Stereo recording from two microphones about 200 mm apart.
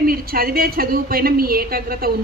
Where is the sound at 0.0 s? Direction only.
50° right (ahead or behind).